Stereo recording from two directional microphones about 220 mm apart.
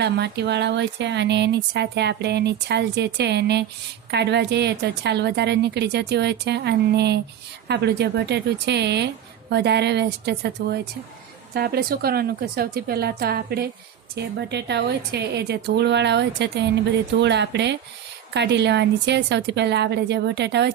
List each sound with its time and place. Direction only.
0.0 s speech: 50° right (ahead or behind)